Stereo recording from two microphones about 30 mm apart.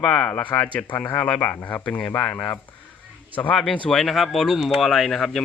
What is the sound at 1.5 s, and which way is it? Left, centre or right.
Speech, left.